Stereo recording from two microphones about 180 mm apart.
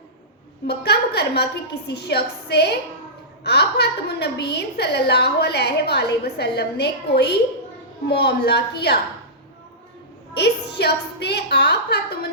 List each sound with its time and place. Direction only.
0.7 s a woman's voice: 65° left (ahead or behind)
10.3 s a woman's voice: 65° left (ahead or behind)